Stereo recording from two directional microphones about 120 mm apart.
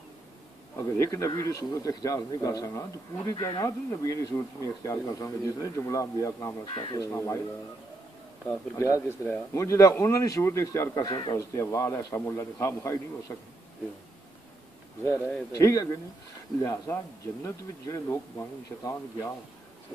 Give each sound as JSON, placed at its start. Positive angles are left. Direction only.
{"t": 0.7, "sound": "speech", "side_deg": 25}
{"t": 6.6, "sound": "speech", "side_deg": 45}
{"t": 7.0, "sound": "speech", "side_deg": 25}
{"t": 8.5, "sound": "speech", "side_deg": 25}
{"t": 15.5, "sound": "speech", "side_deg": 30}